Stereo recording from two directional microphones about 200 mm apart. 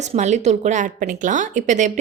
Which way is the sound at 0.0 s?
35° right (ahead or behind).